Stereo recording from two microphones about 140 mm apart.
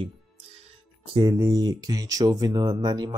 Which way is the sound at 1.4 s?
25° right (ahead or behind).